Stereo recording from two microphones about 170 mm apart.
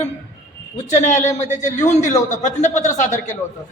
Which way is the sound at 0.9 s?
45° left (ahead or behind).